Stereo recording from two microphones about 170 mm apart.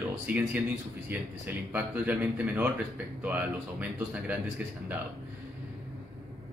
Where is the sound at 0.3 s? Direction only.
10° right (ahead or behind).